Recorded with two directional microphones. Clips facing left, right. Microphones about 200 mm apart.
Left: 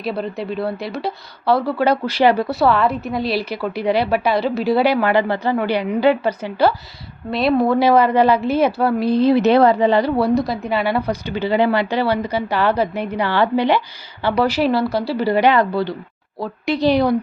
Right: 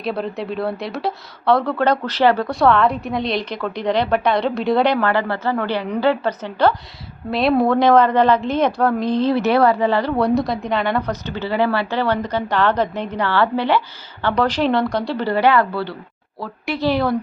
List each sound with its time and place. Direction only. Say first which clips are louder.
0.0 s a woman's voice: even; centre (ahead or behind)